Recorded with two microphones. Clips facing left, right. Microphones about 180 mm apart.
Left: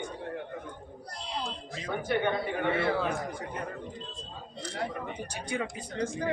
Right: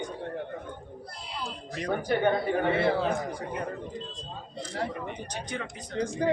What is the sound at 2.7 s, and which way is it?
Speech, 30° right (ahead or behind).